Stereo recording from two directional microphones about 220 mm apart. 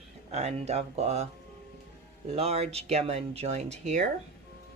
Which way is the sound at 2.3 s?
30° right (ahead or behind).